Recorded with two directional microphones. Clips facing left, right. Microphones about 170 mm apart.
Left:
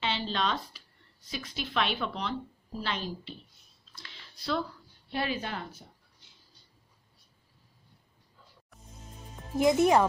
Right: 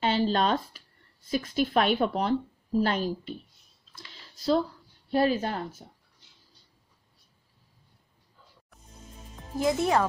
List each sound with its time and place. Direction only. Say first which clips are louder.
0.0 s a woman's voice: right 7 dB; 45° right (ahead or behind)
4.1 s a sound: right 8 dB; 40° right (ahead or behind)
5.1 s a woman's voice: right 8 dB; 40° right (ahead or behind)
9.6 s speech: left 2 dB; 20° left (ahead or behind)